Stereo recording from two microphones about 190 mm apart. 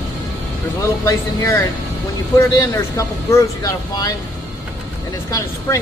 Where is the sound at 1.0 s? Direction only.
15° left (ahead or behind).